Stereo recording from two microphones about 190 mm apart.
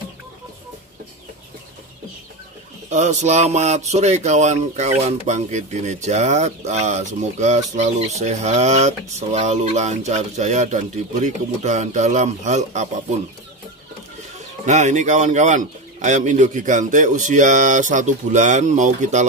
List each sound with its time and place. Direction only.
2.9 s speech: 40° right (ahead or behind)
14.7 s speech: 40° right (ahead or behind)